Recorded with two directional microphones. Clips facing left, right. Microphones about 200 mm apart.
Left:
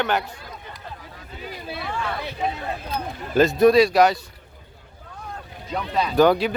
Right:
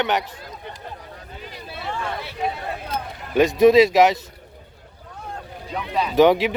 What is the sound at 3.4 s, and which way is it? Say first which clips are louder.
Speech: right 2 dB; 15° right (ahead or behind).